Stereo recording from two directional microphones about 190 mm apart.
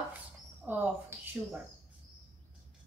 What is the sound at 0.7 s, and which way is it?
Speech, 10° right (ahead or behind).